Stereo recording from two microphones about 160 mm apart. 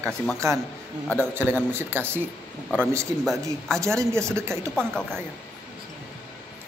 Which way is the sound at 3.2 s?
Centre (ahead or behind).